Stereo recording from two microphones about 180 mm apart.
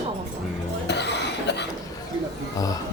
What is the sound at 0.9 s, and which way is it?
Cough, 70° left (ahead or behind).